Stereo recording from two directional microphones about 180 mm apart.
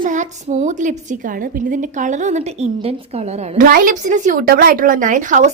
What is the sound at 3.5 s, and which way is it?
A woman's voice, 50° right (ahead or behind).